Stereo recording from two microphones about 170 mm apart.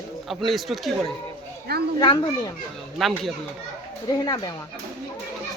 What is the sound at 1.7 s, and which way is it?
Speech, 70° right (ahead or behind).